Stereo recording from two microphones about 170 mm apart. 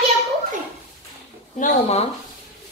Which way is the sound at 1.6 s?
40° left (ahead or behind).